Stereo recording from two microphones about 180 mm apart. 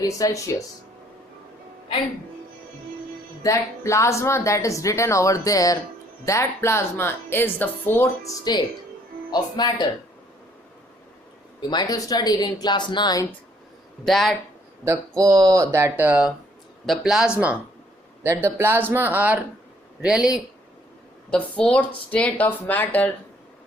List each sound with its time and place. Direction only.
0.0 s speech: 20° left (ahead or behind)
3.4 s speech: 15° left (ahead or behind)
11.7 s speech: 20° left (ahead or behind)
14.0 s speech: centre (ahead or behind)
15.2 s speech: 20° right (ahead or behind); by 23.1 s 10° left (ahead or behind)